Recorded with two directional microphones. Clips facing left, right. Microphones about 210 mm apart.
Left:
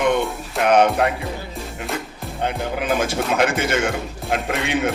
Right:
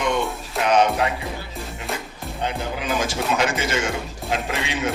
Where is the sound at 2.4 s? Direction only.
55° left (ahead or behind).